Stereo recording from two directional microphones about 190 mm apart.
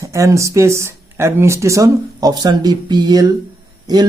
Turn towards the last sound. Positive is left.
turn(degrees=-20)  # may be behind; listen again after turning